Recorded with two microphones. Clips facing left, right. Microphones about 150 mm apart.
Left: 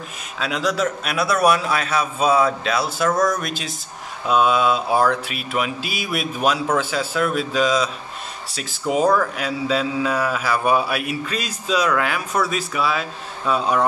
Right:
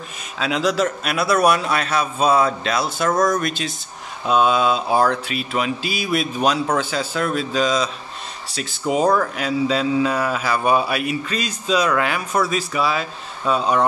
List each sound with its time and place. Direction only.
0.4 s mantra: centre (ahead or behind)
3.1 s speech: 20° right (ahead or behind)
3.3 s mantra: 5° left (ahead or behind)